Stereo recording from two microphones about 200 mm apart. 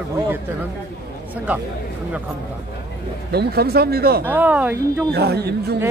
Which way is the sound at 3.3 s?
55° right (ahead or behind).